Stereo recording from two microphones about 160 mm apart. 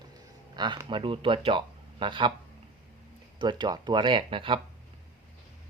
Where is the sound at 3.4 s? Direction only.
30° right (ahead or behind).